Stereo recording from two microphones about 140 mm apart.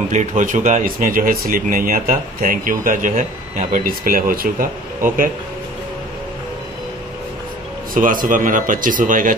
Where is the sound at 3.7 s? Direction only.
90° right.